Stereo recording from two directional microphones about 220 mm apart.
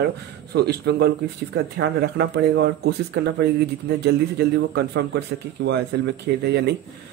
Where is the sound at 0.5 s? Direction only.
50° right (ahead or behind).